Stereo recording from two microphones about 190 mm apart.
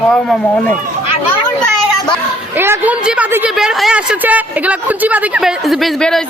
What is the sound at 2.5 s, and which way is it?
A woman's voice, 10° right (ahead or behind).